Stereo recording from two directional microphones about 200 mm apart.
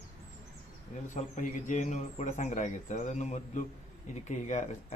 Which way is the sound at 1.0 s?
40° left (ahead or behind).